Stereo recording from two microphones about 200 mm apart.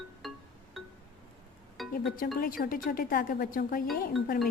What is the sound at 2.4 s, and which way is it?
Speech, 45° left (ahead or behind).